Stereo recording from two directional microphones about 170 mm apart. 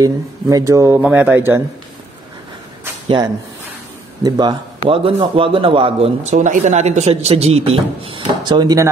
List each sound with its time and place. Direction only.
0.0 s speech: 20° right (ahead or behind)
4.2 s a man's voice: 25° right (ahead or behind)